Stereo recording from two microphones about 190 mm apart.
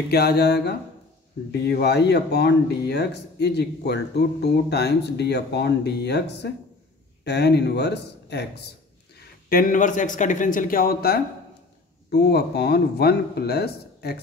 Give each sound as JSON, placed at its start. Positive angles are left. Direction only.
{"t": 0.1, "sound": "speech", "side_deg": 60}
{"t": 9.5, "sound": "speech", "side_deg": 45}